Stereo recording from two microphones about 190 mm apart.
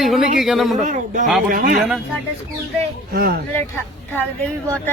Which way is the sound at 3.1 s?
50° right (ahead or behind).